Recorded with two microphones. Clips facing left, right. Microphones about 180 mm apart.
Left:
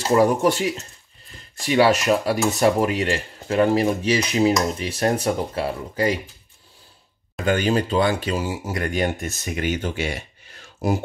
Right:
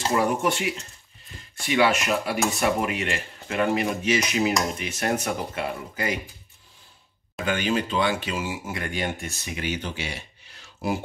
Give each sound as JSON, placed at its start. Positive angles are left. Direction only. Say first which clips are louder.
{"t": 0.1, "sound": "speech", "louder": "left 8 dB", "side_deg": 35}
{"t": 7.4, "sound": "speech", "louder": "left 5 dB", "side_deg": 40}